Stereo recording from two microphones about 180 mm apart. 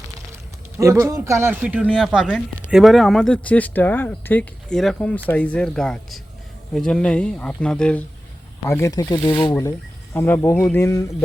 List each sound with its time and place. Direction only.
0.8 s a man's voice: 15° right (ahead or behind); by 11.0 s 15° left (ahead or behind)